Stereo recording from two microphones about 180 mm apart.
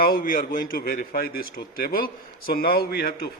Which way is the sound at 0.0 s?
55° left (ahead or behind).